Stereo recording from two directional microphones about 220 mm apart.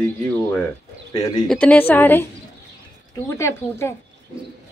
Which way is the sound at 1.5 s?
5° left (ahead or behind).